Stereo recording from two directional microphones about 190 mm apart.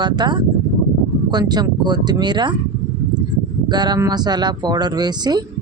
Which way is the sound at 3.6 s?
20° right (ahead or behind).